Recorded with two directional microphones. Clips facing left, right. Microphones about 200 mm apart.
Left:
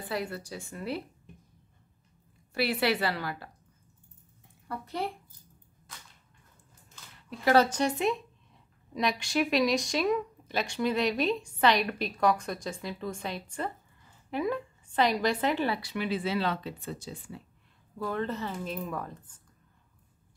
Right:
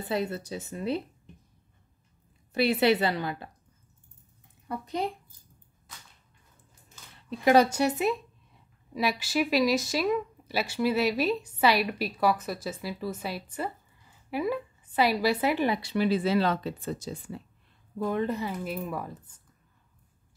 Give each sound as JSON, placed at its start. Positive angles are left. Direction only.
{"t": 0.0, "sound": "speech", "side_deg": -20}
{"t": 2.5, "sound": "speech", "side_deg": -20}
{"t": 4.6, "sound": "speech", "side_deg": -15}
{"t": 7.2, "sound": "a woman's voice", "side_deg": -15}
{"t": 15.8, "sound": "speech", "side_deg": -30}
{"t": 17.9, "sound": "speech", "side_deg": -15}